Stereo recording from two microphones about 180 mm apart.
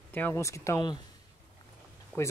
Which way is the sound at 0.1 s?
15° left (ahead or behind).